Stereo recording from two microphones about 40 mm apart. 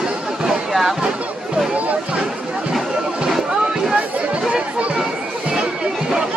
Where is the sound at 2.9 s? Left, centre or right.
Right.